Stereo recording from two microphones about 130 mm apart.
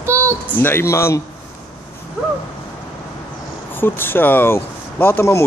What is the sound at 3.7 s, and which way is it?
Speech, 15° left (ahead or behind).